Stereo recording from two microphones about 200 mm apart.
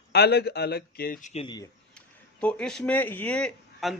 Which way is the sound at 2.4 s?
5° left (ahead or behind).